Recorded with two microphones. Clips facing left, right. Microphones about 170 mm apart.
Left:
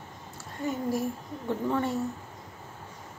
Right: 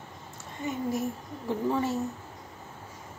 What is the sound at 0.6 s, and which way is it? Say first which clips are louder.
Speech: left 1 dB; centre (ahead or behind).